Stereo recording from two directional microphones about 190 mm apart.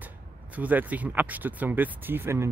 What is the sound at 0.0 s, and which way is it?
Speech, 10° right (ahead or behind).